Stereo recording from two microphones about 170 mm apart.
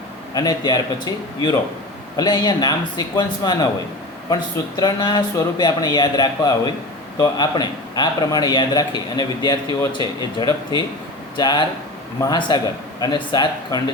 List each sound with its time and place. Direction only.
0.3 s a man's voice: 25° left (ahead or behind)
11.3 s a man's voice: 25° left (ahead or behind)